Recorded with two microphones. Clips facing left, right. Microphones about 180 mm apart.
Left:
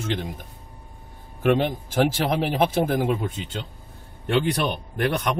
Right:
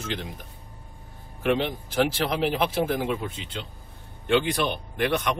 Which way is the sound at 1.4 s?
50° left (ahead or behind).